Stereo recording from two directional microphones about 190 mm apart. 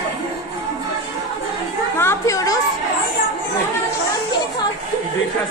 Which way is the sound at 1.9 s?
15° left (ahead or behind).